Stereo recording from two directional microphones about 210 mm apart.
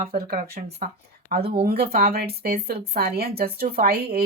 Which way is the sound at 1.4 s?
25° right (ahead or behind).